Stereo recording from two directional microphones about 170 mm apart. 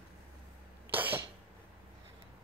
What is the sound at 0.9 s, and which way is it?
Cough, 10° right (ahead or behind).